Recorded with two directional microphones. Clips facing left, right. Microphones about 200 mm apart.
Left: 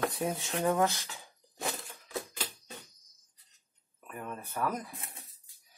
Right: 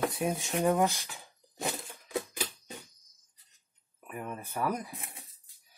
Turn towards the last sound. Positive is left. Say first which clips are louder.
# right 1 dB
turn(degrees=-10)  # may be behind; listen again after turning